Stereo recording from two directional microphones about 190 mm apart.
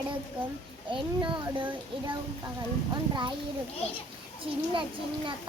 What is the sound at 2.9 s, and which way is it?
Child singing, 25° right (ahead or behind).